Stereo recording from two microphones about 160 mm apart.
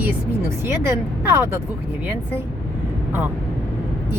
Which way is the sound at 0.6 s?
15° right (ahead or behind).